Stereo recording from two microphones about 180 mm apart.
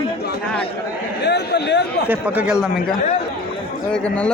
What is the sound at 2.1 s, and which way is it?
A man's voice, 10° right (ahead or behind).